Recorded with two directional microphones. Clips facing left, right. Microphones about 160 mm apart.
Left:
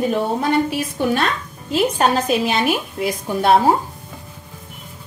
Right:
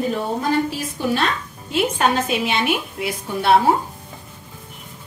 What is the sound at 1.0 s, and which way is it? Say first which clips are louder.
Speech: left 3 dB; 60° left (ahead or behind).